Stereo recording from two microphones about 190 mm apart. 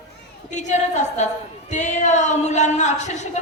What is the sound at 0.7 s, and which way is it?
A woman's voice, 40° left (ahead or behind).